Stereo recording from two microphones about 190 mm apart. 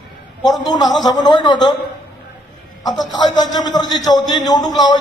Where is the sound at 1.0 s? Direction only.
20° left (ahead or behind).